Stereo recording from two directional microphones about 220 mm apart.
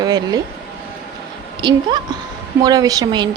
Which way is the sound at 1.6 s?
20° right (ahead or behind).